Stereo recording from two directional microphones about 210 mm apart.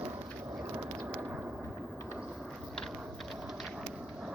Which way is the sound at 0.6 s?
15° right (ahead or behind).